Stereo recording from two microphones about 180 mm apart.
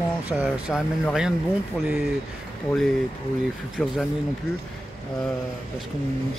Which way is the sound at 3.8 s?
5° left (ahead or behind).